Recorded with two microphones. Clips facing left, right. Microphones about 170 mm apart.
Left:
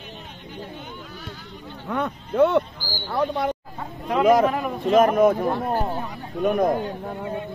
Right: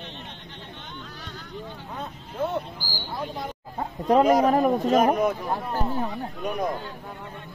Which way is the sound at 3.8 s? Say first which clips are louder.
Right 5 dB; 40° right (ahead or behind).